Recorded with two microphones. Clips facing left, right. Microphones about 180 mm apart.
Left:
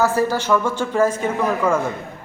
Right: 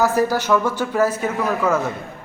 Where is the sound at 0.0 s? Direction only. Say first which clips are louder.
Even; 15° right (ahead or behind).